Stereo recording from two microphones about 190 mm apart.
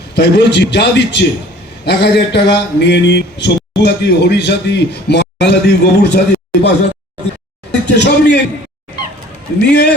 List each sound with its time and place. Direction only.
0.1 s speech: 65° left (ahead or behind)
7.7 s speech: 65° left (ahead or behind)
9.6 s speech: 60° left (ahead or behind)